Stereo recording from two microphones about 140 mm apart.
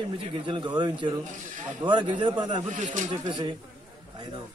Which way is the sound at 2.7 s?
60° right (ahead or behind).